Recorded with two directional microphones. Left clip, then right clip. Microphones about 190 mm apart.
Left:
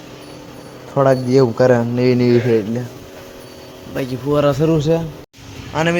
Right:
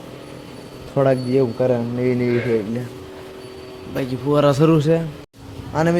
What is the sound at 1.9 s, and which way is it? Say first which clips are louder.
Speech: left 5 dB; 40° left (ahead or behind).